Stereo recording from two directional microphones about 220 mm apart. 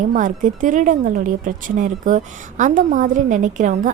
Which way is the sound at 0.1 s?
35° right (ahead or behind).